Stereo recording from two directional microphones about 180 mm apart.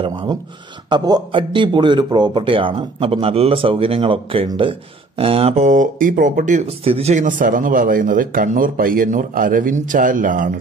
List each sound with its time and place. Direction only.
0.0 s speech: 25° right (ahead or behind); by 10.5 s 50° right (ahead or behind)